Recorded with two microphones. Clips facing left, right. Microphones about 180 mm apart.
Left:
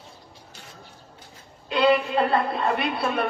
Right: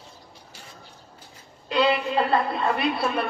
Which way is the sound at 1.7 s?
50° left (ahead or behind).